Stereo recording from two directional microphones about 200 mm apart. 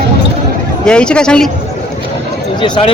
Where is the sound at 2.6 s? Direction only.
25° left (ahead or behind).